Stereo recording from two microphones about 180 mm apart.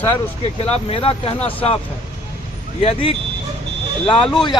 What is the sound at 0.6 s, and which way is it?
Speech, 35° left (ahead or behind).